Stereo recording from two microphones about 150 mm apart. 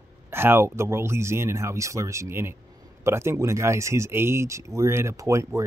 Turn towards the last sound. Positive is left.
turn(degrees=-20)  # may be behind; listen again after turning